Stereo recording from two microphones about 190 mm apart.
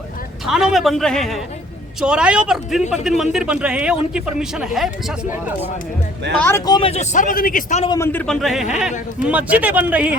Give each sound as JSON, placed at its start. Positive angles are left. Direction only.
{"t": 0.4, "sound": "speech", "side_deg": 0}
{"t": 6.3, "sound": "a man's voice", "side_deg": 10}
{"t": 6.7, "sound": "a man's voice", "side_deg": 25}
{"t": 7.9, "sound": "a man's voice", "side_deg": 15}